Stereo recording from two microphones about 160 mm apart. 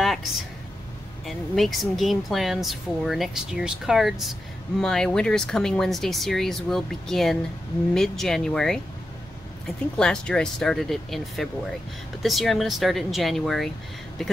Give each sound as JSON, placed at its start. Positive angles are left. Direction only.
{"t": 0.0, "sound": "a sound", "side_deg": 0}
{"t": 1.2, "sound": "speech", "side_deg": 0}
{"t": 9.9, "sound": "speech", "side_deg": 5}